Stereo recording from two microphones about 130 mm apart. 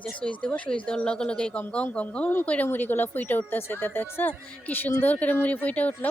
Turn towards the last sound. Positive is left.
turn(degrees=15)  # may be behind; listen again after turning